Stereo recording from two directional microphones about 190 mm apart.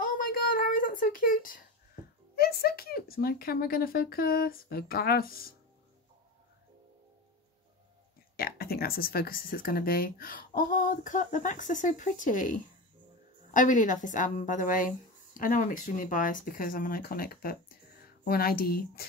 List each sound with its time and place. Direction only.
0.6 s a sound: 45° left (ahead or behind)
2.3 s speech: 55° left (ahead or behind)
8.4 s a woman's voice: 55° left (ahead or behind)